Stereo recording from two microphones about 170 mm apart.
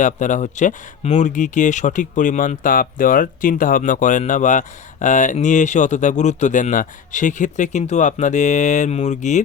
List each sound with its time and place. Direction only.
0.0 s speech: 45° left (ahead or behind)